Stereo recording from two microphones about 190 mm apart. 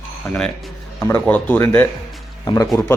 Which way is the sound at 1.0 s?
10° left (ahead or behind).